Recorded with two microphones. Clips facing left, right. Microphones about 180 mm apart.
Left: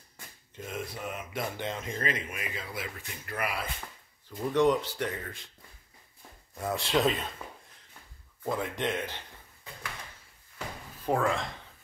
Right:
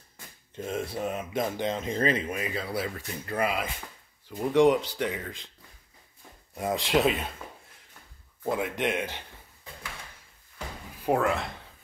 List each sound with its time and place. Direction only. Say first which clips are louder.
0.7 s a sound: right 6 dB; 30° right (ahead or behind)
1.3 s a sound: right 5 dB; 20° right (ahead or behind)
2.0 s speech: right 7 dB; 35° right (ahead or behind)
4.3 s speech: right 4 dB; 10° right (ahead or behind)
6.5 s speech: right 3 dB; 20° right (ahead or behind)
8.5 s speech: right 3 dB; 10° right (ahead or behind)
11.1 s speech: right 3 dB; 5° right (ahead or behind)